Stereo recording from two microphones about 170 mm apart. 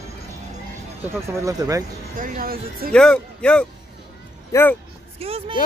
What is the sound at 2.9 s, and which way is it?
A man's voice, 5° left (ahead or behind).